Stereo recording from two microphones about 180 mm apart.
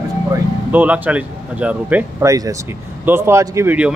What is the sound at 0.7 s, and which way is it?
Speech, 10° right (ahead or behind).